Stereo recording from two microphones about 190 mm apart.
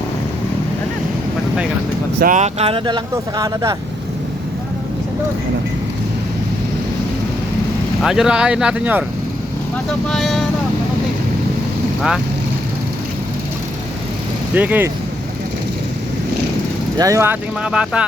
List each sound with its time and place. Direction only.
2.1 s speech: 45° right (ahead or behind); by 3.8 s 15° right (ahead or behind)
8.0 s speech: 5° right (ahead or behind)
10.1 s speech: centre (ahead or behind)
14.5 s speech: 10° right (ahead or behind)
17.0 s speech: 15° right (ahead or behind)